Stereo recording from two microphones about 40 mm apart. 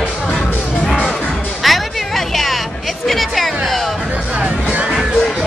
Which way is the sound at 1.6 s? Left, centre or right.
Centre.